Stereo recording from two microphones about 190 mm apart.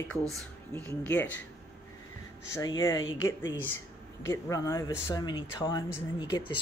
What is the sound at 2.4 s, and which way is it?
Speech, 15° left (ahead or behind).